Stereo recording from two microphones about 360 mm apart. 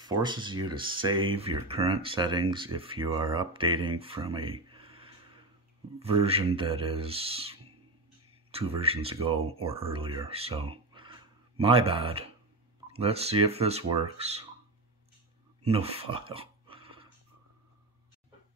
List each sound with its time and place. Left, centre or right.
0.0 s speech: centre
10.7 s a sound: centre
11.6 s speech: centre
15.6 s speech: centre
16.3 s dog: centre